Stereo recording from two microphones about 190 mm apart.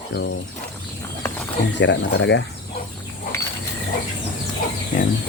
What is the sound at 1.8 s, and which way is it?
Speech, 65° left (ahead or behind).